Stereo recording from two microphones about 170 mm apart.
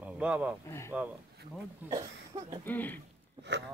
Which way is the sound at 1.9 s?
25° right (ahead or behind).